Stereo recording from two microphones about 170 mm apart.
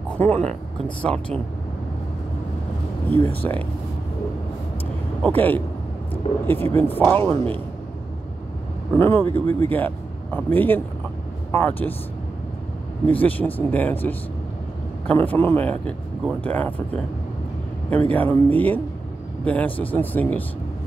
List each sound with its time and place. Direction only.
0.2 s speech: 10° left (ahead or behind)
3.1 s speech: 10° left (ahead or behind)
5.2 s speech: 10° left (ahead or behind)
8.9 s speech: 15° left (ahead or behind)
13.1 s speech: 10° left (ahead or behind)
15.0 s speech: 10° left (ahead or behind)
17.8 s speech: 10° left (ahead or behind)